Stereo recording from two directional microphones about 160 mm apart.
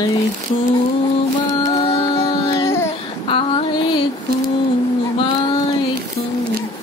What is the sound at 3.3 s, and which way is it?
Female singing, 35° left (ahead or behind).